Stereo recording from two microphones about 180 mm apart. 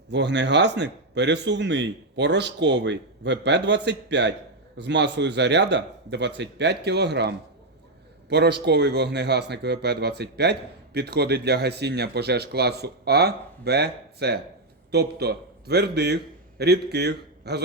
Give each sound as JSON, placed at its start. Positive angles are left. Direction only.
{"t": 0.1, "sound": "a man's voice", "side_deg": -75}